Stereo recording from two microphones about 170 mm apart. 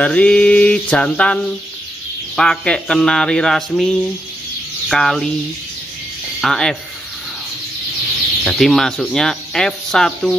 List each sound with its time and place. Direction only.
0.0 s mantra: 5° left (ahead or behind)
2.3 s speech: 5° left (ahead or behind)
6.4 s speech: 5° left (ahead or behind)
8.5 s speech: centre (ahead or behind)